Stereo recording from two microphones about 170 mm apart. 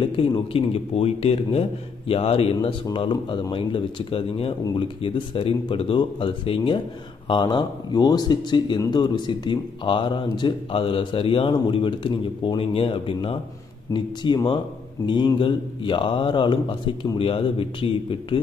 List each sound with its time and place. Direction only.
0.0 s speech: 30° left (ahead or behind)